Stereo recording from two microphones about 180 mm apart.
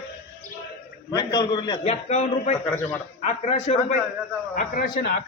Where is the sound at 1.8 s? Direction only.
40° left (ahead or behind).